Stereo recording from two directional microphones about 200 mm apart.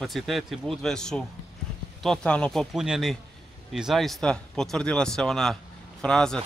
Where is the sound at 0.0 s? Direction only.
Centre (ahead or behind).